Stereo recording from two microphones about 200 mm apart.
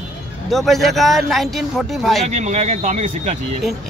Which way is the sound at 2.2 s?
35° right (ahead or behind).